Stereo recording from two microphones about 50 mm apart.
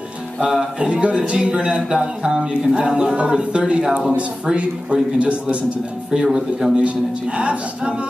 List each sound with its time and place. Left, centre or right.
0.4 s speech: centre
4.2 s speech: right
6.2 s speech: centre
6.8 s speech: right